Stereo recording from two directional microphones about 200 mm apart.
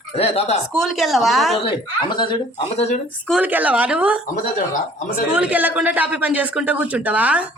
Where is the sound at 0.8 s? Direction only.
Centre (ahead or behind).